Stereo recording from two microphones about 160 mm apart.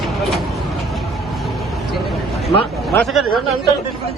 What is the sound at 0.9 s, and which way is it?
Vehicle, centre (ahead or behind).